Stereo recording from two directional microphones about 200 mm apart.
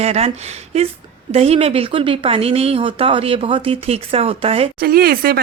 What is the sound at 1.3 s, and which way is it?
Speech, 30° right (ahead or behind).